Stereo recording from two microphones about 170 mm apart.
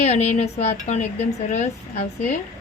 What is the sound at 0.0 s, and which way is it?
A woman's voice, 40° left (ahead or behind).